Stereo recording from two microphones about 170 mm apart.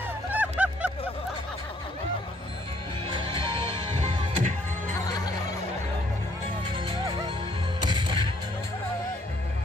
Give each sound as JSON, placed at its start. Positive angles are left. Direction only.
{"t": 0.3, "sound": "vehicle", "side_deg": -10}
{"t": 3.1, "sound": "music", "side_deg": -30}
{"t": 5.0, "sound": "music", "side_deg": 20}
{"t": 6.6, "sound": "music", "side_deg": -30}